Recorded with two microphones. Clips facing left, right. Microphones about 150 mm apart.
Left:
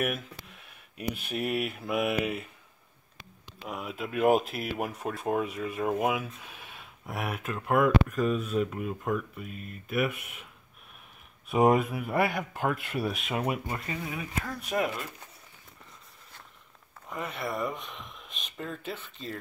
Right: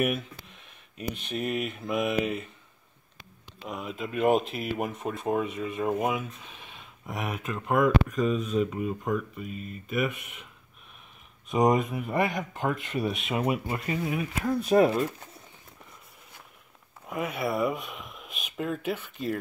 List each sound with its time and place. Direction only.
0.9 s speech: 5° left (ahead or behind)
3.6 s speech: 5° left (ahead or behind)
11.4 s speech: 5° left (ahead or behind)
13.8 s speech: 15° right (ahead or behind)
14.7 s speech: 35° right (ahead or behind)
17.1 s speech: 5° right (ahead or behind)